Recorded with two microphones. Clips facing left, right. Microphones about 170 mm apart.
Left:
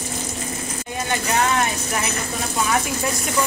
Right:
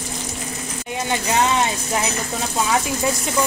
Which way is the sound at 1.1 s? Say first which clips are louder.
Right 2 dB; 20° right (ahead or behind).